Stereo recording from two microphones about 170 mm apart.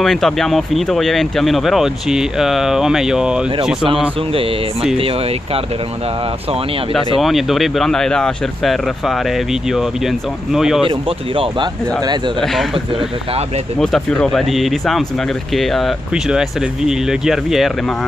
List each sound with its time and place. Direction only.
0.0 s speech: centre (ahead or behind)
4.9 s speech: 35° right (ahead or behind)
7.2 s speech: centre (ahead or behind)
10.9 s speech: 30° right (ahead or behind)
13.7 s speech: 5° left (ahead or behind)